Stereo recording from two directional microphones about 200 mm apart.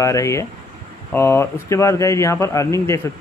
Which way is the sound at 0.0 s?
15° left (ahead or behind).